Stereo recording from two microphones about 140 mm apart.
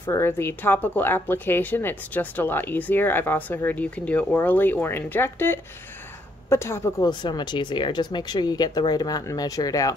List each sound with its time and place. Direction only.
0.0 s a woman's voice: 15° left (ahead or behind)
7.1 s speech: 30° left (ahead or behind)